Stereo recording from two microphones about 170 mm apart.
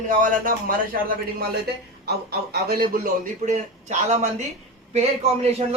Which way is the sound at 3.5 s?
45° right (ahead or behind).